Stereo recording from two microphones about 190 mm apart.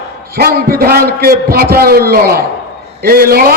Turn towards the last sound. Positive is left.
turn(degrees=-50)  # may be behind; listen again after turning